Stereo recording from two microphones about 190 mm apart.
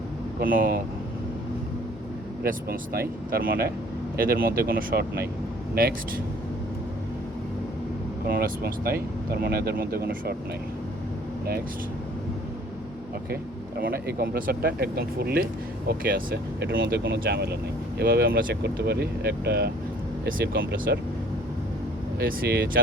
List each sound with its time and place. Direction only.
0.3 s speech: 50° right (ahead or behind)
2.4 s speech: 55° right (ahead or behind)
8.3 s speech: 50° right (ahead or behind)
13.7 s speech: 55° right (ahead or behind)
22.2 s speech: 55° right (ahead or behind)